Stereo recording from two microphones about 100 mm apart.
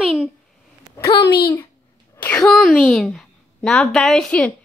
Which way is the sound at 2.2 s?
15° left (ahead or behind).